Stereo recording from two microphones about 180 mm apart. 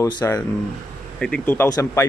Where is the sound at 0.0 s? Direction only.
15° left (ahead or behind).